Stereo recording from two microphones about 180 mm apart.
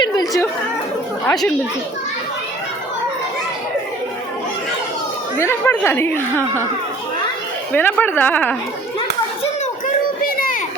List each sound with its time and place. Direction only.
0.0 s chatter: 20° left (ahead or behind)
1.3 s speech: 5° left (ahead or behind)
5.4 s speech: 15° left (ahead or behind)
7.7 s speech: 10° left (ahead or behind)
10.3 s a sound: 50° left (ahead or behind)